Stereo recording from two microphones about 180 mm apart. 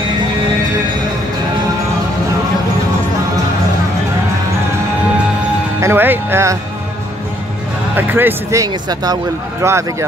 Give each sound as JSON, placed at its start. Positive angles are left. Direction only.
{"t": 5.8, "sound": "speech", "side_deg": -15}
{"t": 7.9, "sound": "speech", "side_deg": -10}